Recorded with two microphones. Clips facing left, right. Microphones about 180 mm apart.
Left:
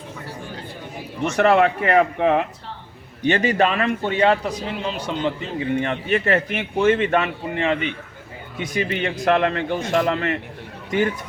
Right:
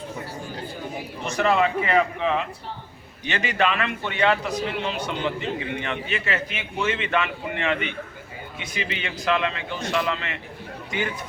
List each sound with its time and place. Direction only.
1.2 s speech: 70° left (ahead or behind)
3.2 s a man's voice: 45° left (ahead or behind)
8.5 s a man's voice: 50° left (ahead or behind)